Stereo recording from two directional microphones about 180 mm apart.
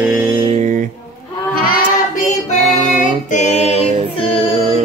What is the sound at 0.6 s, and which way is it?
Music, 45° right (ahead or behind).